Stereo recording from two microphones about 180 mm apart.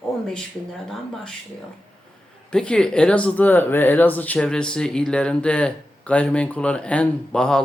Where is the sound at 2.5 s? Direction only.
5° left (ahead or behind).